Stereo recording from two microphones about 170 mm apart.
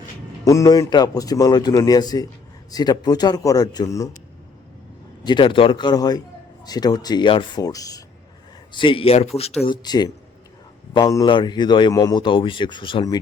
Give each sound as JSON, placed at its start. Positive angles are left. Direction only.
{"t": 0.4, "sound": "a man's voice", "side_deg": 20}
{"t": 5.2, "sound": "a man's voice", "side_deg": 25}
{"t": 9.6, "sound": "a man's voice", "side_deg": 25}